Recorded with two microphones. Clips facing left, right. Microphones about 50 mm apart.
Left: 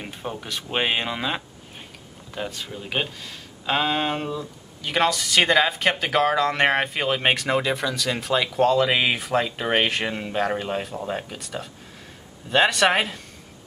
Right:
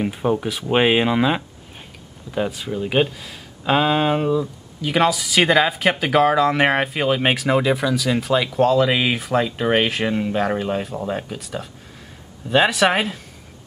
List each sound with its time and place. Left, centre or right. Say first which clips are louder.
0.0 s speech: right 12 dB; centre